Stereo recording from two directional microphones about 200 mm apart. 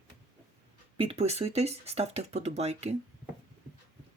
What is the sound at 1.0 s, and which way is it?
Speech, 30° right (ahead or behind).